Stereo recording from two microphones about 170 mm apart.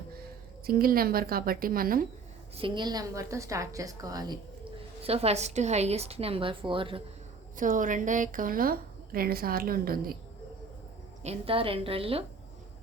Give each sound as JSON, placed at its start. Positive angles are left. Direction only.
{"t": 0.6, "sound": "a woman's voice", "side_deg": -60}
{"t": 2.6, "sound": "a woman's voice", "side_deg": -30}
{"t": 5.0, "sound": "a woman's voice", "side_deg": -35}
{"t": 7.5, "sound": "a woman's voice", "side_deg": -50}
{"t": 11.2, "sound": "a woman's voice", "side_deg": -35}